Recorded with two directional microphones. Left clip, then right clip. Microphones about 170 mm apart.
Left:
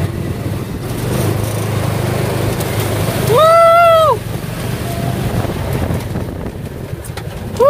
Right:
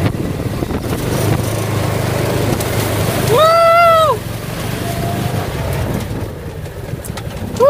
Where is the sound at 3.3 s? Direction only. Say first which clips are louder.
Left 2 dB; 30° left (ahead or behind).